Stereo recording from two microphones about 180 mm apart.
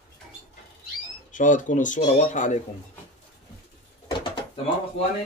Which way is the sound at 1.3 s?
45° left (ahead or behind).